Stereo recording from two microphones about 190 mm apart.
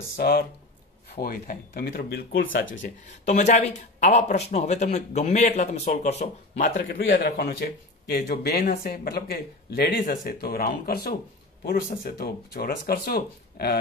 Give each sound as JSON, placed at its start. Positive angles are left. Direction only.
{"t": 0.2, "sound": "speech", "side_deg": 55}
{"t": 2.8, "sound": "speech", "side_deg": 40}
{"t": 7.1, "sound": "speech", "side_deg": 50}